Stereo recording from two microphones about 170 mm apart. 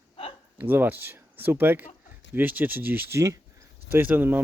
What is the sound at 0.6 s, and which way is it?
Speech, 10° right (ahead or behind).